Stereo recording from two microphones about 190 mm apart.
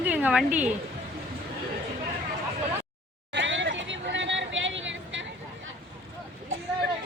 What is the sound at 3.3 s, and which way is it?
Vehicle, 75° right (ahead or behind).